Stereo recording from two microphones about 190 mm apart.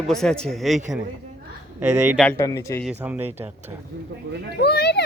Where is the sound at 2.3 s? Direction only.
15° left (ahead or behind).